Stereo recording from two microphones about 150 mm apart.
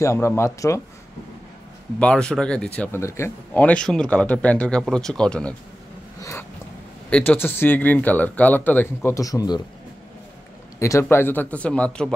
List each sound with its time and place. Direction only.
0.0 s speech: 20° left (ahead or behind)
2.0 s speech: 5° left (ahead or behind)
7.1 s speech: 10° left (ahead or behind)
10.8 s speech: 20° left (ahead or behind)